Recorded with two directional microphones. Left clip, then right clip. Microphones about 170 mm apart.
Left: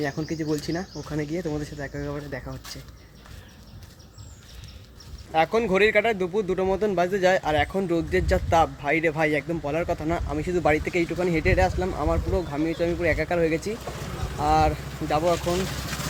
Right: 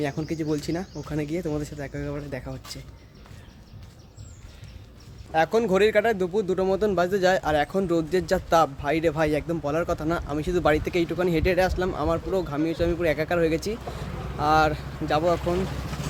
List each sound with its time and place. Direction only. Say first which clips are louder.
0.0 s speech: even; 5° right (ahead or behind)
5.3 s speech: even; 20° right (ahead or behind)
10.4 s speech: even; 5° right (ahead or behind)